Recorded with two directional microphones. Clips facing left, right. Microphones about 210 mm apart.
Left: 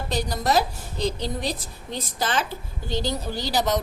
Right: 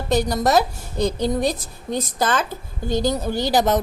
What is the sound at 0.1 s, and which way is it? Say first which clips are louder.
A woman's voice: right 6 dB; 50° right (ahead or behind).